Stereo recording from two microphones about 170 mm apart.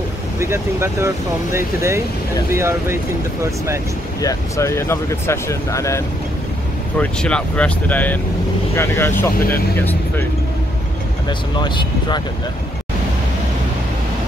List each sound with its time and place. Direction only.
0.4 s speech: 15° right (ahead or behind)
4.2 s speech: 20° left (ahead or behind)
7.0 s speech: 5° left (ahead or behind)
11.2 s speech: 25° left (ahead or behind)